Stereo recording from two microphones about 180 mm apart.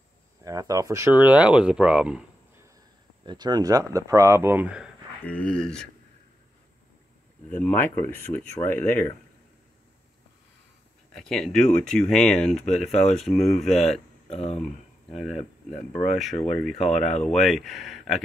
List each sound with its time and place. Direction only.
0.4 s speech: 20° right (ahead or behind)
3.3 s speech: 25° right (ahead or behind)
5.2 s speech: 5° left (ahead or behind)
7.5 s speech: 10° left (ahead or behind)
11.1 s speech: centre (ahead or behind)
14.3 s speech: 35° left (ahead or behind)
14.6 s speech: centre (ahead or behind)